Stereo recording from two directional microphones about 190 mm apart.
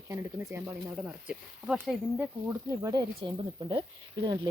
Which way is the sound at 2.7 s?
20° right (ahead or behind).